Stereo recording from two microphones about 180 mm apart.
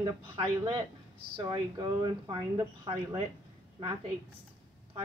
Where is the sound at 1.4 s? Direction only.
25° right (ahead or behind).